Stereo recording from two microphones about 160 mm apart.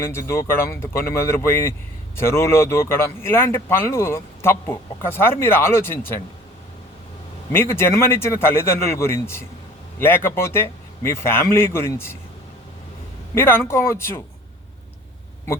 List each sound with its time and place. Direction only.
0.0 s speech: 15° left (ahead or behind)
7.5 s speech: 15° left (ahead or behind)
13.3 s speech: 15° left (ahead or behind)